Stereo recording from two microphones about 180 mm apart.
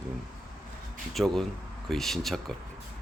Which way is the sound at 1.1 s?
Centre (ahead or behind).